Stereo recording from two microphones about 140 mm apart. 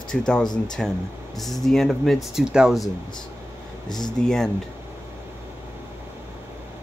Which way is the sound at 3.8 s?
30° left (ahead or behind).